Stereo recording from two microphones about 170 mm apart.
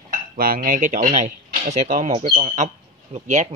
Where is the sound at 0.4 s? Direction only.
55° right (ahead or behind).